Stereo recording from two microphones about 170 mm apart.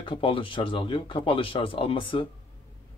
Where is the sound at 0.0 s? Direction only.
30° left (ahead or behind).